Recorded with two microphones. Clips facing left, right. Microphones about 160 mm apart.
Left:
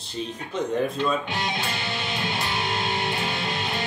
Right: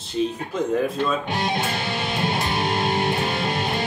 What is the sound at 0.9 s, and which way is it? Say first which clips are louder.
Music: right 2 dB; 50° right (ahead or behind).